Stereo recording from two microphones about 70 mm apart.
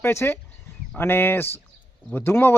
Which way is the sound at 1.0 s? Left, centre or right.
Left.